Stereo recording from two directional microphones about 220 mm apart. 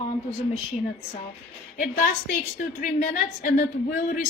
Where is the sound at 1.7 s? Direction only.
40° left (ahead or behind).